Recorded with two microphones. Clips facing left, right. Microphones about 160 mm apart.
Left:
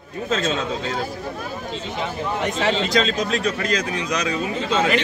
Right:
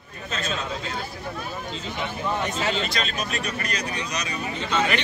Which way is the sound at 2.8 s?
90° left.